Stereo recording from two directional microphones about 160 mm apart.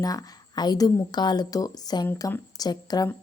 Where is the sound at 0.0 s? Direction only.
25° left (ahead or behind).